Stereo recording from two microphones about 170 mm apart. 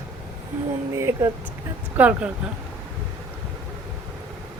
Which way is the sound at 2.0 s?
10° right (ahead or behind).